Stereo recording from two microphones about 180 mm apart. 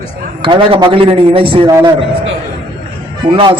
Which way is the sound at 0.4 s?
25° right (ahead or behind).